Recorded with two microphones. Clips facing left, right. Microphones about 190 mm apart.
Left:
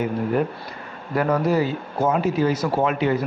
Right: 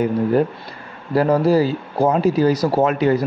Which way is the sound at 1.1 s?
30° right (ahead or behind).